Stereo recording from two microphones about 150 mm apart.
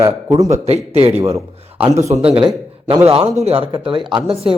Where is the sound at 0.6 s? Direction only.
45° right (ahead or behind).